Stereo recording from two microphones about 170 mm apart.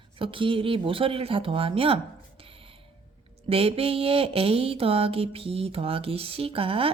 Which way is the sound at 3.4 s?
35° right (ahead or behind).